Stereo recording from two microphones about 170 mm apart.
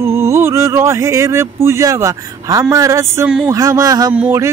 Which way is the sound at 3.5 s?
20° right (ahead or behind).